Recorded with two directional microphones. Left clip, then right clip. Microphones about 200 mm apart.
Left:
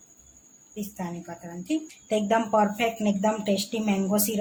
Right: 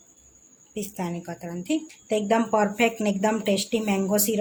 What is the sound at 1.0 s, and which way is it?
Speech, 40° right (ahead or behind).